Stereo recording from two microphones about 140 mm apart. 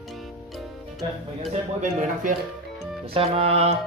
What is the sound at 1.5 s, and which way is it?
Speech, 60° right (ahead or behind).